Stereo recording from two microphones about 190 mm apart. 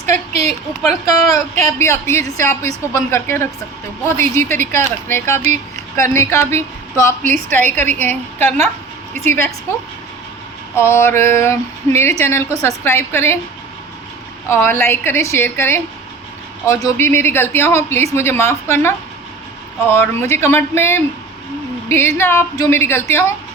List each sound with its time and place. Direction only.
0.3 s a woman's voice: 35° right (ahead or behind)
1.3 s speech: 15° left (ahead or behind)
14.5 s speech: 15° left (ahead or behind)
20.3 s speech: 10° left (ahead or behind)